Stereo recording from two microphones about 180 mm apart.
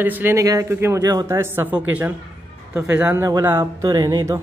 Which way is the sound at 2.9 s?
10° right (ahead or behind).